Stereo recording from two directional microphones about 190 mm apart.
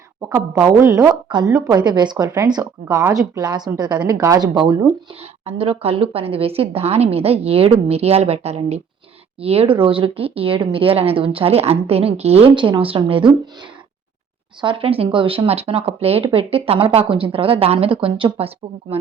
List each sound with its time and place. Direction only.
0.2 s a woman's voice: 15° right (ahead or behind)
5.2 s a woman's voice: 30° right (ahead or behind)
14.6 s speech: 25° right (ahead or behind)